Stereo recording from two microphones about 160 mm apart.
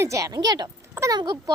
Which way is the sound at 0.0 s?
20° right (ahead or behind).